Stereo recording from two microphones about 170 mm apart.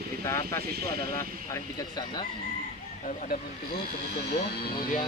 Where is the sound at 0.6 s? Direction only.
65° right (ahead or behind).